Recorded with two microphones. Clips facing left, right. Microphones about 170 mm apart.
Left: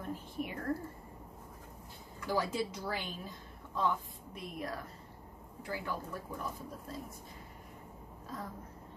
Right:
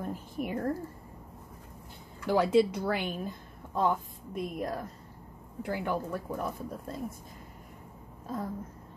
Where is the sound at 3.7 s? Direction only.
50° right (ahead or behind).